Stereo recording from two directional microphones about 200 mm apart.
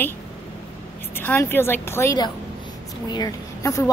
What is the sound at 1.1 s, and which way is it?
A woman's voice, 10° left (ahead or behind).